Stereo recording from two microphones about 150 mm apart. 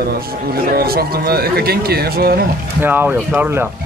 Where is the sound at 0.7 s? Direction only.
90° right.